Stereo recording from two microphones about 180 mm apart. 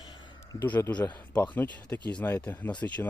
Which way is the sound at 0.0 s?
25° left (ahead or behind).